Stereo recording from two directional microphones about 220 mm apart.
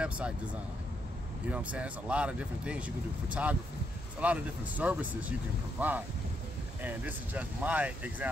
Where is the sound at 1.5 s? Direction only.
5° right (ahead or behind).